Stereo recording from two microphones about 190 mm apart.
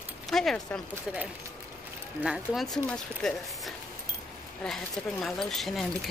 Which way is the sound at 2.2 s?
5° right (ahead or behind).